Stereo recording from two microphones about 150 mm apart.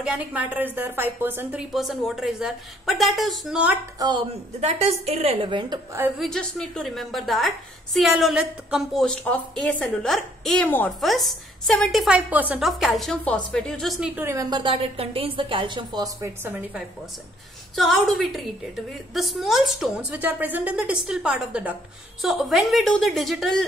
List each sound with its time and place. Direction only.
0.0 s a woman's voice: 10° right (ahead or behind)
1.7 s a woman's voice: centre (ahead or behind)
4.0 s a woman's voice: 30° right (ahead or behind)
4.6 s a woman's voice: 45° right (ahead or behind)
6.1 s a woman's voice: centre (ahead or behind)
11.0 s a woman's voice: centre (ahead or behind)
12.3 s a woman's voice: 10° right (ahead or behind)
14.2 s a woman's voice: 20° right (ahead or behind)
16.2 s a woman's voice: 10° right (ahead or behind)
17.7 s a woman's voice: centre (ahead or behind)